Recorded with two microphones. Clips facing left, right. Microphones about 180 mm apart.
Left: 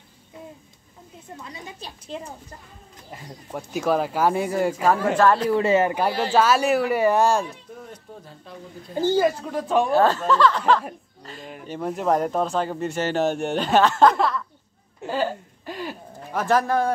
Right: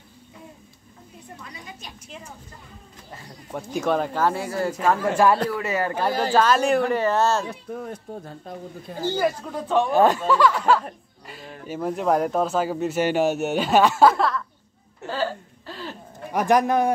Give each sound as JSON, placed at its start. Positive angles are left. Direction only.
{"t": 1.4, "sound": "a woman's voice", "side_deg": 30}
{"t": 3.5, "sound": "speech", "side_deg": 5}
{"t": 5.1, "sound": "speech", "side_deg": -10}
{"t": 5.5, "sound": "speech", "side_deg": 25}
{"t": 5.9, "sound": "speech", "side_deg": 15}
{"t": 8.5, "sound": "speech", "side_deg": -50}
{"t": 9.2, "sound": "speech", "side_deg": 10}
{"t": 9.9, "sound": "speech", "side_deg": -15}
{"t": 11.6, "sound": "speech", "side_deg": -5}
{"t": 15.0, "sound": "a sound", "side_deg": 15}
{"t": 16.3, "sound": "speech", "side_deg": -15}